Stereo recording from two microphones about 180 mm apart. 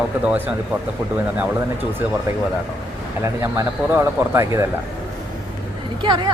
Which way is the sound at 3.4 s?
15° right (ahead or behind).